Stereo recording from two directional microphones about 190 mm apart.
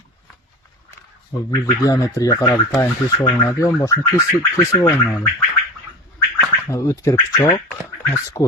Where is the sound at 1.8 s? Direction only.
20° left (ahead or behind).